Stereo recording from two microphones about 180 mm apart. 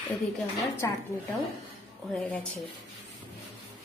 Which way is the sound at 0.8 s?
15° left (ahead or behind).